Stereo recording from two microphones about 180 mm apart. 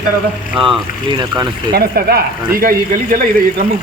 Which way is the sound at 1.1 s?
20° right (ahead or behind).